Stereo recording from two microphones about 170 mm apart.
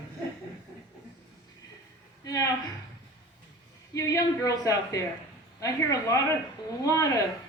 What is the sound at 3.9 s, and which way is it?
A woman's voice, 20° left (ahead or behind).